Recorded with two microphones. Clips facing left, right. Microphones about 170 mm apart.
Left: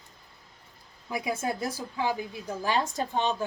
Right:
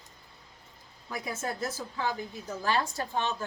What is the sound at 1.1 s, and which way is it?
A woman's voice, 10° left (ahead or behind).